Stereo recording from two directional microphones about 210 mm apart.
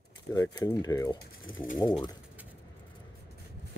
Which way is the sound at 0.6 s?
20° left (ahead or behind).